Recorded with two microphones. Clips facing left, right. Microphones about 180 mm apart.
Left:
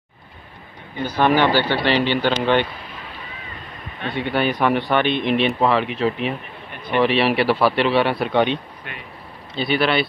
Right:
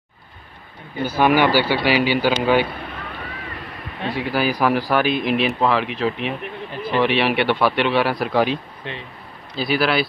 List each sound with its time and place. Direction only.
1.0 s speech: 10° right (ahead or behind)
4.1 s speech: centre (ahead or behind)
8.8 s speech: 30° right (ahead or behind)
9.6 s speech: centre (ahead or behind)